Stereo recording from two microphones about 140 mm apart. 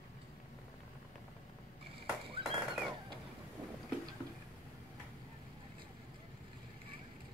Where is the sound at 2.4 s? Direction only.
35° right (ahead or behind).